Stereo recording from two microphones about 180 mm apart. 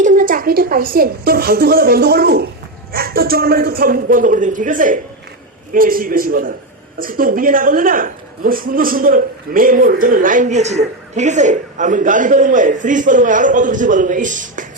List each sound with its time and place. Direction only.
0.0 s a woman's voice: 45° right (ahead or behind)